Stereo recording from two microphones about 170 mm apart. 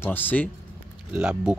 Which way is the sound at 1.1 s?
5° right (ahead or behind).